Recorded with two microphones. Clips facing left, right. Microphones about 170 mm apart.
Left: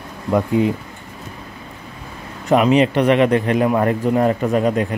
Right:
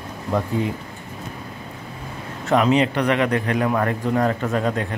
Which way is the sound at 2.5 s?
15° left (ahead or behind).